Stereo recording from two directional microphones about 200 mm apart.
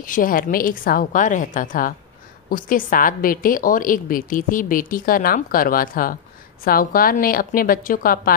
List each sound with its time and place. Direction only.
0.0 s a woman's voice: 45° left (ahead or behind)